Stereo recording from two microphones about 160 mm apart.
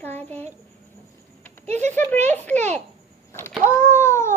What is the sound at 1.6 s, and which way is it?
Speech, 45° right (ahead or behind).